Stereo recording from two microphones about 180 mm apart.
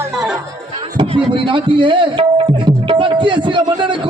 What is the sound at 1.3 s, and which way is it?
Tabla, 30° right (ahead or behind).